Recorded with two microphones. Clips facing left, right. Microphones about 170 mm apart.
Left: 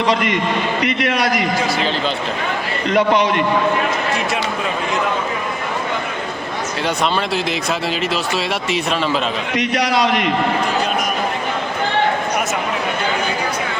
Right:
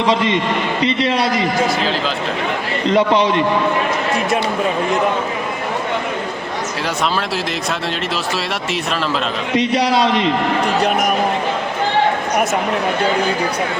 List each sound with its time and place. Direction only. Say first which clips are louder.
0.1 s a man's voice: right 3 dB; 25° right (ahead or behind)
0.8 s a sound: right 4 dB; 30° right (ahead or behind)
2.8 s a man's voice: right 1 dB; 30° right (ahead or behind)
9.6 s a man's voice: right 3 dB; 30° right (ahead or behind)